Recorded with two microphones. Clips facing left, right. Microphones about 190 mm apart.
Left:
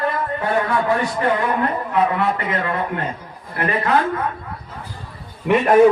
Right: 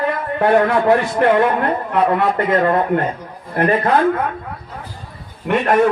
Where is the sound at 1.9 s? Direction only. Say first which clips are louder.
Right 3 dB; 55° right (ahead or behind).